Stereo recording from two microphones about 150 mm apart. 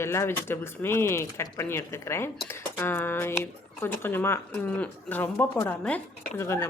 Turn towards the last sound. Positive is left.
turn(degrees=15)  # may be behind; listen again after turning